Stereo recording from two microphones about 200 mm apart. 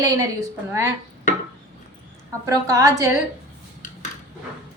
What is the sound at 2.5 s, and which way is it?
Speech, 15° right (ahead or behind).